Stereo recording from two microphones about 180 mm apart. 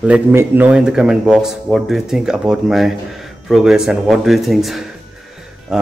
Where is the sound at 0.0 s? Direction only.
10° right (ahead or behind).